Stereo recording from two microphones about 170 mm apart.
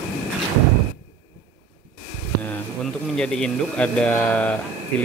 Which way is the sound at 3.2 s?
5° left (ahead or behind).